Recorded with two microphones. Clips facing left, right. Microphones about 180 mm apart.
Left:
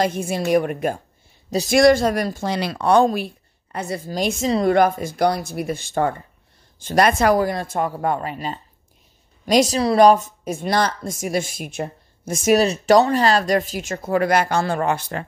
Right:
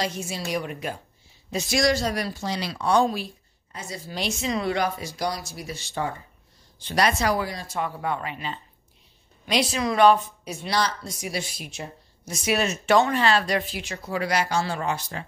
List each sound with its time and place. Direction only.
0.0 s a woman's voice: 55° left (ahead or behind)
4.1 s a woman's voice: 45° left (ahead or behind)